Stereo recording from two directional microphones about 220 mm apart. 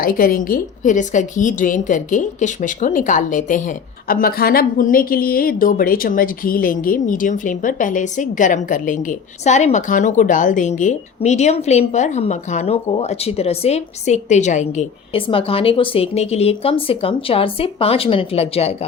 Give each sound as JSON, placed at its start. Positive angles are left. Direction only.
{"t": 0.0, "sound": "a woman's voice", "side_deg": 40}